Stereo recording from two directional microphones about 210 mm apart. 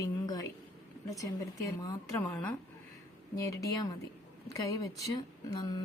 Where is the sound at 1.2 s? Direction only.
15° left (ahead or behind).